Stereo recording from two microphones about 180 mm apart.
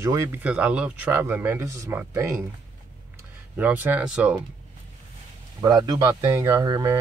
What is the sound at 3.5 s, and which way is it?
Speech, 10° right (ahead or behind).